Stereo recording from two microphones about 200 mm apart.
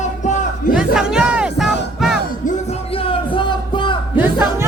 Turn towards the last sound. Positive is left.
turn(degrees=-10)  # may be behind; listen again after turning